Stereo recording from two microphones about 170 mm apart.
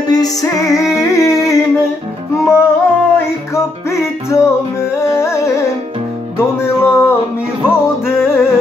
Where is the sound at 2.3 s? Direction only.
15° left (ahead or behind).